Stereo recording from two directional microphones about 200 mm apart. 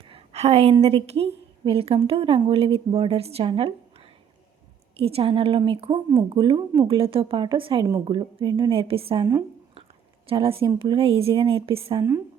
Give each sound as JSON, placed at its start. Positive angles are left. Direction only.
{"t": 0.1, "sound": "a woman's voice", "side_deg": -30}